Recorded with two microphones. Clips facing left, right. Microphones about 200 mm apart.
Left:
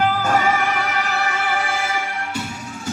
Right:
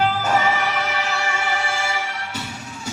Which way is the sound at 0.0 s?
50° left (ahead or behind).